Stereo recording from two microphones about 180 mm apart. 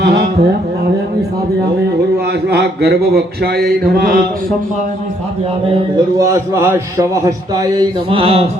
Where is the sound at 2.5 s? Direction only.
65° right (ahead or behind).